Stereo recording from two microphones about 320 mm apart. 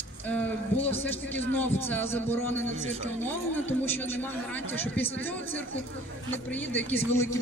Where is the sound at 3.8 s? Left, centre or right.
Centre.